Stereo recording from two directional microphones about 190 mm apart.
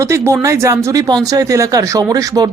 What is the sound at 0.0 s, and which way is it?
Speech, 15° right (ahead or behind).